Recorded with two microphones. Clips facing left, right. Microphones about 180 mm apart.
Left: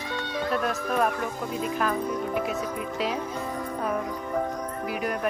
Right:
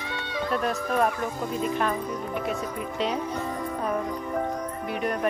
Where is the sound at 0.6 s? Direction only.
Centre (ahead or behind).